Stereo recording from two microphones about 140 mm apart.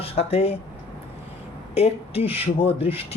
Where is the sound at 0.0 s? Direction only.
45° left (ahead or behind).